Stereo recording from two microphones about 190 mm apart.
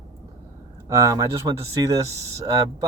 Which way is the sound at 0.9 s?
15° right (ahead or behind).